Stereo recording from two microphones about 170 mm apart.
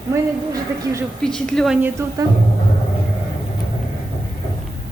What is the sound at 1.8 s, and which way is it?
Speech, 15° right (ahead or behind).